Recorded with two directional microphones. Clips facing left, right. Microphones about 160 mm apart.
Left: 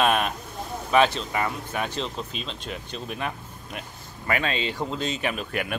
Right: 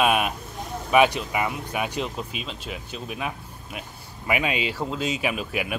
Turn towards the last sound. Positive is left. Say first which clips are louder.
# right 1 dB
turn(degrees=-5)  # may be behind; listen again after turning